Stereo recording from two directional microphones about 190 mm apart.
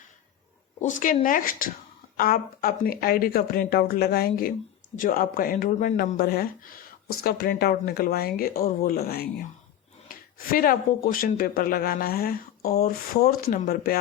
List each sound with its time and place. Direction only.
0.8 s speech: 40° left (ahead or behind)
10.3 s speech: 50° left (ahead or behind)